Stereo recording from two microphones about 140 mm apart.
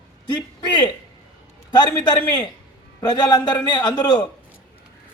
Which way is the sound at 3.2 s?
30° left (ahead or behind).